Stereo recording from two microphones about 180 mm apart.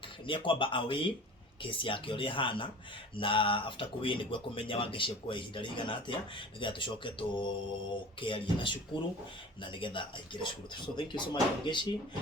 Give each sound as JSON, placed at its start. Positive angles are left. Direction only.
{"t": 0.3, "sound": "speech", "side_deg": 30}